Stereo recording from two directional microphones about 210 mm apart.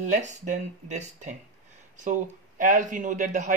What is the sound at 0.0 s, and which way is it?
Speech, 35° right (ahead or behind).